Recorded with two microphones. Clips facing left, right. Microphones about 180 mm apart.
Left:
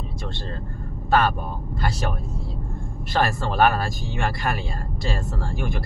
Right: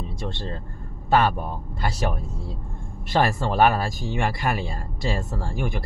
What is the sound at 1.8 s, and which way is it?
Speech, 20° right (ahead or behind).